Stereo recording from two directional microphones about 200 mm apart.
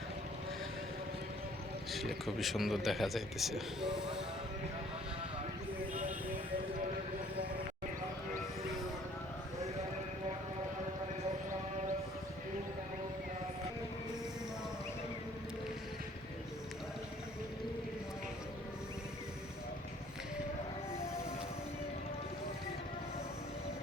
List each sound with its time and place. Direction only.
1.9 s speech: centre (ahead or behind)
5.9 s music: 40° right (ahead or behind)